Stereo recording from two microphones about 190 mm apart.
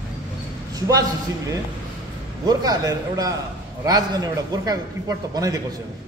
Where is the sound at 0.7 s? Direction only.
20° right (ahead or behind).